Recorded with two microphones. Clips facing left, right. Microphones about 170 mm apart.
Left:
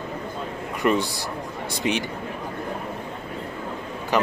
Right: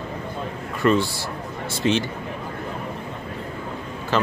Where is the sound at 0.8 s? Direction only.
15° left (ahead or behind).